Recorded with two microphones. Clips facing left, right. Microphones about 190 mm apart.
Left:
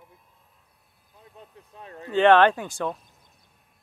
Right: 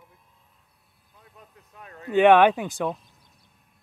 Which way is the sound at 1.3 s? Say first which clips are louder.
Left 3 dB; 30° left (ahead or behind).